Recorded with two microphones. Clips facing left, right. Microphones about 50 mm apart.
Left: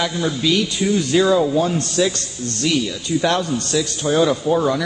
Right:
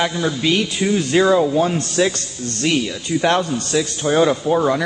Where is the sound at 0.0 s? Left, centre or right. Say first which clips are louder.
Right 1 dB; right.